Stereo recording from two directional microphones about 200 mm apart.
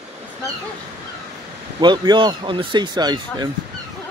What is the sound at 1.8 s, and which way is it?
Speech, 20° right (ahead or behind).